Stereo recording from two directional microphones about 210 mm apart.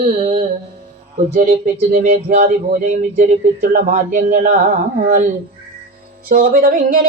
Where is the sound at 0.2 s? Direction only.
25° right (ahead or behind).